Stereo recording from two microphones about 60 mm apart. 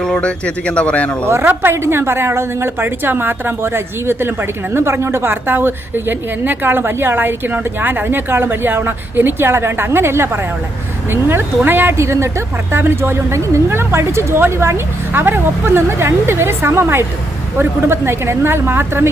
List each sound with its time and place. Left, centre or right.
0.0 s speech: centre
1.5 s a woman's voice: right
11.9 s speech: right
12.7 s a woman's voice: right